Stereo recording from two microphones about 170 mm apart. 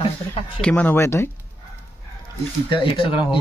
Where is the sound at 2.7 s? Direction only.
30° left (ahead or behind).